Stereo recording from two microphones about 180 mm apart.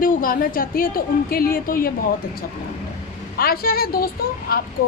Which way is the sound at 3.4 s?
55° left (ahead or behind).